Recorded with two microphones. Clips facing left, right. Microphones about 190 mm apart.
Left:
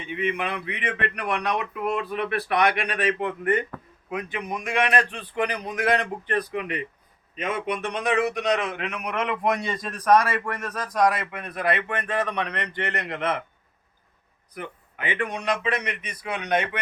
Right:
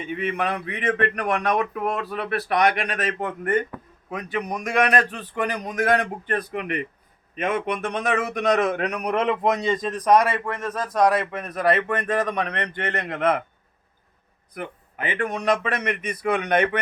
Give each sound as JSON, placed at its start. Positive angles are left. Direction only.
{"t": 0.1, "sound": "a man's voice", "side_deg": -45}
{"t": 11.3, "sound": "speech", "side_deg": -40}
{"t": 14.5, "sound": "speech", "side_deg": -45}